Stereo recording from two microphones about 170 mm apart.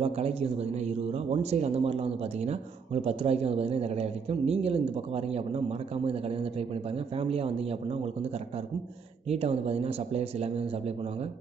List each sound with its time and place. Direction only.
0.0 s a man's voice: 35° right (ahead or behind)
7.2 s a man's voice: 35° right (ahead or behind)
9.3 s a man's voice: 35° right (ahead or behind)